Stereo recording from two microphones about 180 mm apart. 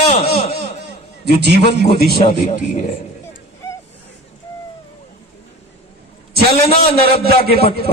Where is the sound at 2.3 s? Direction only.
45° left (ahead or behind).